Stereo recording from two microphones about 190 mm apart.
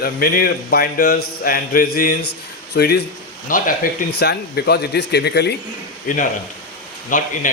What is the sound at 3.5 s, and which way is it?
Speech, 45° left (ahead or behind).